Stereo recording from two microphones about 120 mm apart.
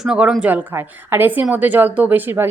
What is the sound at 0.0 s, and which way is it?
A woman's voice, 5° right (ahead or behind).